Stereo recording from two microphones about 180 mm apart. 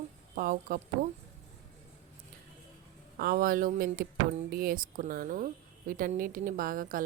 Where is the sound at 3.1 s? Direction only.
55° right (ahead or behind).